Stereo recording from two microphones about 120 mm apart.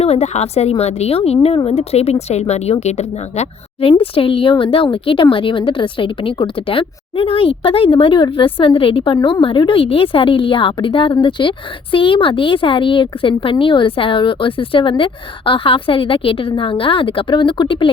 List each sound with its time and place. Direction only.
0.0 s a woman's voice: 60° left (ahead or behind); by 17.9 s 45° left (ahead or behind)